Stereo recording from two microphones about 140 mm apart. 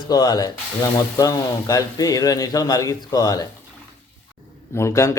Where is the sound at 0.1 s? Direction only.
30° left (ahead or behind).